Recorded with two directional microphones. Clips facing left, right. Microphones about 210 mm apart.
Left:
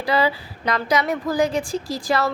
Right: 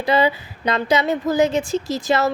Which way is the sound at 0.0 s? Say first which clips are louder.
Right 3 dB; 20° right (ahead or behind).